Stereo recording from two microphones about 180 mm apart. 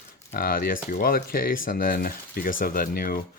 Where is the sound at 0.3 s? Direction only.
55° left (ahead or behind).